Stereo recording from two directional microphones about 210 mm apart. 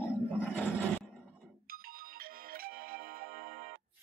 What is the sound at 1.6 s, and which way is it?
Music, 45° right (ahead or behind).